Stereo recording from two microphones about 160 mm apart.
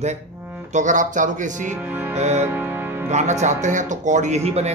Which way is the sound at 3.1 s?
45° right (ahead or behind).